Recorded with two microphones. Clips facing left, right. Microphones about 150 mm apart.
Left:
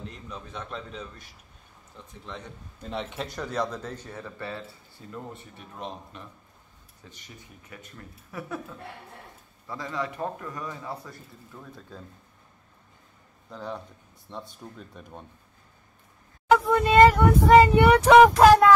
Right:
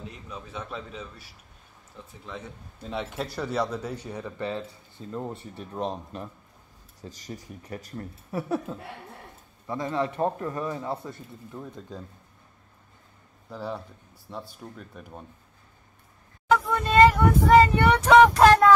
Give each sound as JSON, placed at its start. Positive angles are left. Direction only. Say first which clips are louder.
{"t": 0.1, "sound": "a man's voice", "louder": "right 1 dB", "side_deg": -5}
{"t": 13.5, "sound": "a man's voice", "louder": "right 2 dB", "side_deg": -5}
{"t": 16.4, "sound": "speech", "louder": "left 3 dB", "side_deg": 10}